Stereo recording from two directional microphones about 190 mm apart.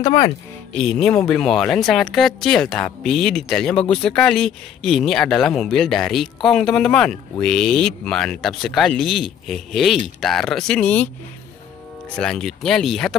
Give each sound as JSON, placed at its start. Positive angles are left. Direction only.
{"t": 0.0, "sound": "speech", "side_deg": 20}
{"t": 0.7, "sound": "speech", "side_deg": 5}
{"t": 12.2, "sound": "speech", "side_deg": 5}